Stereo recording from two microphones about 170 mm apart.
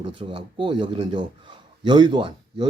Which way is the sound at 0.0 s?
30° right (ahead or behind).